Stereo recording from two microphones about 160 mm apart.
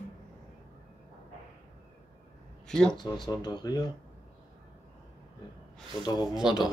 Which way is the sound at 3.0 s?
25° left (ahead or behind).